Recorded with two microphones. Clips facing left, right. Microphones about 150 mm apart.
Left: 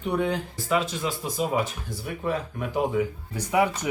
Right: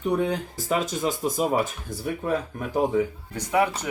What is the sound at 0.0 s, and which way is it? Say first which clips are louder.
Speech: right 2 dB; 40° right (ahead or behind).